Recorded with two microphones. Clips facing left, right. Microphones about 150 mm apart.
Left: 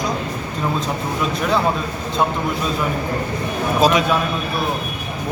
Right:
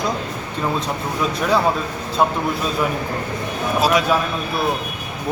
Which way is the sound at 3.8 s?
5° right (ahead or behind).